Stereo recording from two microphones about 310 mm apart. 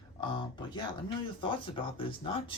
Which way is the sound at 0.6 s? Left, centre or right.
Centre.